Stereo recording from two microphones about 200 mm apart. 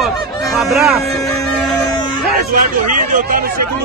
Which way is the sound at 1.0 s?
15° left (ahead or behind).